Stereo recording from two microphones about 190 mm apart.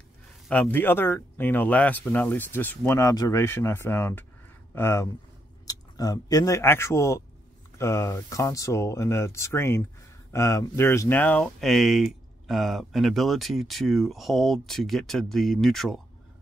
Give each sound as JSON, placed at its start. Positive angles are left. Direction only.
{"t": 0.5, "sound": "speech", "side_deg": 10}